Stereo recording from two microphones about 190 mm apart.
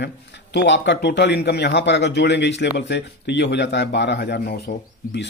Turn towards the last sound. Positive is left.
turn(degrees=60)  # may be behind; listen again after turning